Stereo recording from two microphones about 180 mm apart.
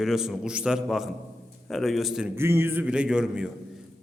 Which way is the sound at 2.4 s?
15° right (ahead or behind).